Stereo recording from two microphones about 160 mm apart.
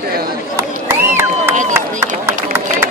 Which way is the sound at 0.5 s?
15° right (ahead or behind).